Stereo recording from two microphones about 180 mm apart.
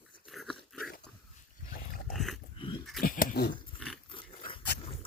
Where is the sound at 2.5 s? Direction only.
30° left (ahead or behind).